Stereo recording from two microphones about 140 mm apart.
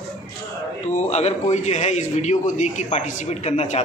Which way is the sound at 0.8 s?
50° left (ahead or behind).